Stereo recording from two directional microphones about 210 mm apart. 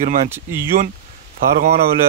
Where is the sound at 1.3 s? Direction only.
30° right (ahead or behind).